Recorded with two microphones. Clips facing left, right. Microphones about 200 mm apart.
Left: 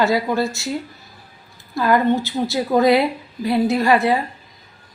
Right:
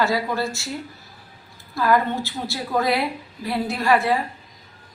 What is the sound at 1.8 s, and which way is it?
A woman's voice, 20° left (ahead or behind).